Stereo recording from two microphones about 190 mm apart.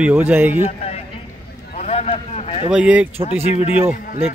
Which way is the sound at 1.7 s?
35° left (ahead or behind).